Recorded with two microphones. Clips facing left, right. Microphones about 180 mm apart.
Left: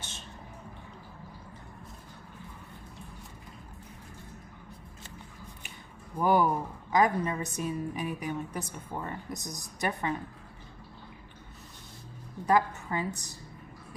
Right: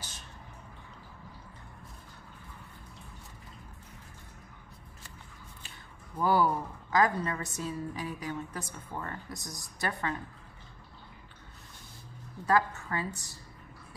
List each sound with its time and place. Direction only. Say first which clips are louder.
6.1 s a woman's voice: left 2 dB; 20° left (ahead or behind)
12.4 s a woman's voice: left 2 dB; 20° left (ahead or behind)